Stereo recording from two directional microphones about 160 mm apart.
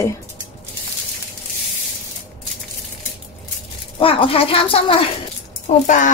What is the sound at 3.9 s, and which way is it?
Speech, 35° left (ahead or behind).